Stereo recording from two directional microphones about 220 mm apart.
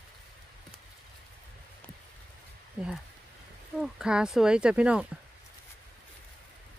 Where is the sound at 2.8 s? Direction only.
5° right (ahead or behind).